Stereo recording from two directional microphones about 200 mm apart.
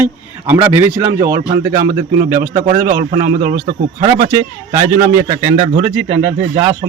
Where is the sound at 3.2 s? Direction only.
45° right (ahead or behind).